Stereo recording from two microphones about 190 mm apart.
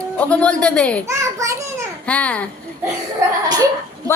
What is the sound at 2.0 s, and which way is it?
Speech, 5° left (ahead or behind).